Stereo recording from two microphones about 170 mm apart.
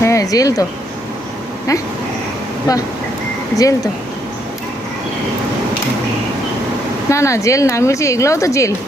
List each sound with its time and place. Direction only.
0.0 s a sound: 20° left (ahead or behind)
3.5 s speech: 20° left (ahead or behind)
7.1 s speech: 15° left (ahead or behind)